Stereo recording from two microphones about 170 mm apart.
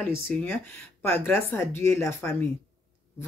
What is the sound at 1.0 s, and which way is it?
Speech, 15° left (ahead or behind).